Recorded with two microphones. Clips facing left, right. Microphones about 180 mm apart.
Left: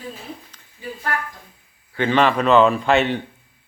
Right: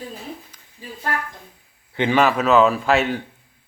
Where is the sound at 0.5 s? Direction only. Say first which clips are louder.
Left 1 dB; 10° right (ahead or behind).